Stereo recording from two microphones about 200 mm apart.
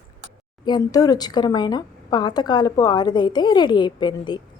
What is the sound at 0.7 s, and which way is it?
A woman's voice, 20° left (ahead or behind).